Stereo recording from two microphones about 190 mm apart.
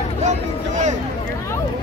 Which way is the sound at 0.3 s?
40° right (ahead or behind).